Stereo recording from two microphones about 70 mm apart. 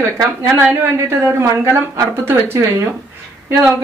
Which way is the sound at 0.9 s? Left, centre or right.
Right.